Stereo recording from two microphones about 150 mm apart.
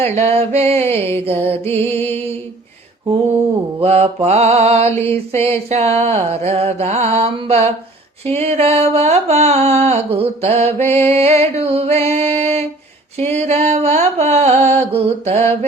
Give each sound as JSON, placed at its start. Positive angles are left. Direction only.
{"t": 0.0, "sound": "music", "side_deg": -45}
{"t": 1.8, "sound": "music", "side_deg": 15}
{"t": 3.8, "sound": "mantra", "side_deg": -40}
{"t": 10.7, "sound": "music", "side_deg": 15}
{"t": 11.1, "sound": "mantra", "side_deg": -45}